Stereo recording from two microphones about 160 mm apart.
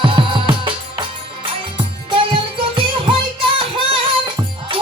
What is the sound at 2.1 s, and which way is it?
Music, 35° right (ahead or behind).